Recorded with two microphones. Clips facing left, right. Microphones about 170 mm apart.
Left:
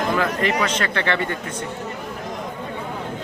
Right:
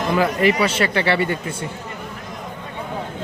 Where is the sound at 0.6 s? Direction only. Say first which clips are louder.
Right 3 dB; 10° right (ahead or behind).